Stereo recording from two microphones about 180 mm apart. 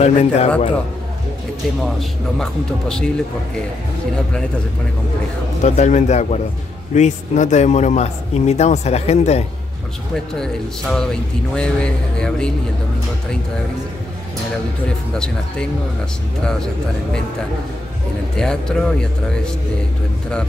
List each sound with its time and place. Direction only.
0.0 s a man's voice: 35° left (ahead or behind)
2.0 s speech: centre (ahead or behind)
5.6 s a man's voice: 40° left (ahead or behind)
10.1 s speech: 5° left (ahead or behind)
15.1 s speech: 5° left (ahead or behind)
18.3 s speech: 5° left (ahead or behind)